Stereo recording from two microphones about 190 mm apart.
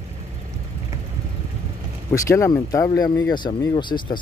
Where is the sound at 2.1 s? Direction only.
15° left (ahead or behind).